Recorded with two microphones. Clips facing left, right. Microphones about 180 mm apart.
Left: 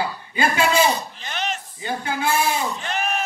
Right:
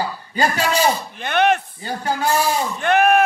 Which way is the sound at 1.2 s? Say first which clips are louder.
Right 14 dB; 60° right (ahead or behind).